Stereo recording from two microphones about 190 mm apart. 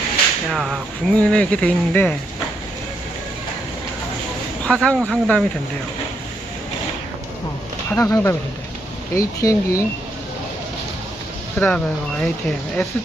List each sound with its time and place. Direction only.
0.5 s speech: centre (ahead or behind)
4.6 s speech: 5° left (ahead or behind)
7.9 s speech: 15° left (ahead or behind)
11.6 s speech: 5° left (ahead or behind)